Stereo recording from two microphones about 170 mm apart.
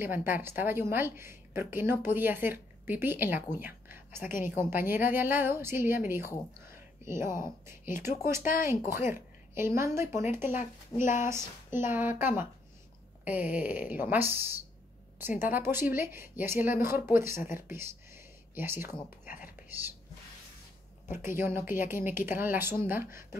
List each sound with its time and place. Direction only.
0.0 s a woman's voice: 15° right (ahead or behind)
8.4 s speech: 55° left (ahead or behind)
8.6 s a woman's voice: 15° right (ahead or behind)
21.1 s a woman's voice: 15° right (ahead or behind)